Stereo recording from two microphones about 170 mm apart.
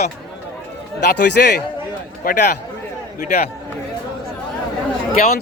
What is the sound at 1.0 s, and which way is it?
Speech, 80° left.